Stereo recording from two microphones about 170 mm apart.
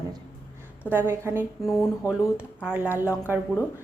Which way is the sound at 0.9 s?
10° right (ahead or behind).